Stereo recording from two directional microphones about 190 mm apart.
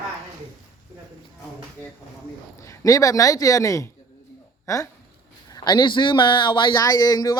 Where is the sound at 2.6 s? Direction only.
15° left (ahead or behind).